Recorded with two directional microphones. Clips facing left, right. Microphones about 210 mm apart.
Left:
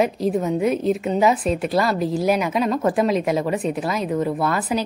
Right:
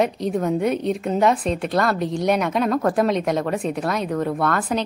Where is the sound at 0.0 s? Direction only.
5° left (ahead or behind).